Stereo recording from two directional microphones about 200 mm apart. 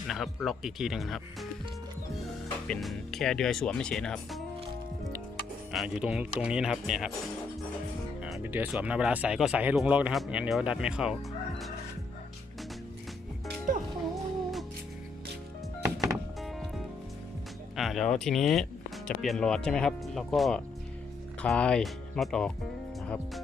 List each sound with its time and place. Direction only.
0.1 s speech: centre (ahead or behind)
2.6 s speech: centre (ahead or behind)
5.7 s speech: centre (ahead or behind)
8.2 s speech: 5° right (ahead or behind)
13.7 s music: 40° right (ahead or behind)
15.8 s music: 15° right (ahead or behind)
16.4 s music: centre (ahead or behind)
17.7 s speech: centre (ahead or behind)